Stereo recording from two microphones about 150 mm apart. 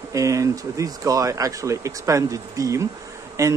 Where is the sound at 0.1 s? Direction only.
20° right (ahead or behind).